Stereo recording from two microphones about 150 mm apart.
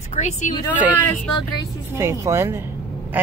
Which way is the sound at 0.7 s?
10° right (ahead or behind).